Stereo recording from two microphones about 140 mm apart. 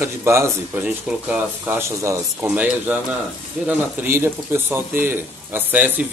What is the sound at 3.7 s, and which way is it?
Speech, 15° right (ahead or behind).